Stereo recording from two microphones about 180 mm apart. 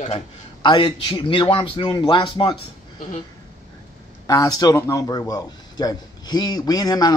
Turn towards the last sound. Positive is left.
turn(degrees=20)  # may be behind; listen again after turning